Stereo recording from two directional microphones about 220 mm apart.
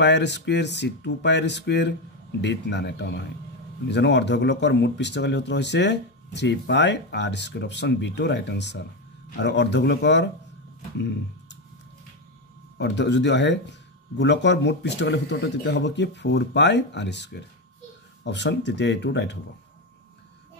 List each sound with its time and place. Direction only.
0.0 s speech: 50° left (ahead or behind)
12.7 s speech: 50° left (ahead or behind)